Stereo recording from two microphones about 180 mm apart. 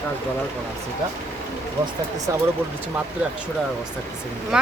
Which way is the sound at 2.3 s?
15° right (ahead or behind).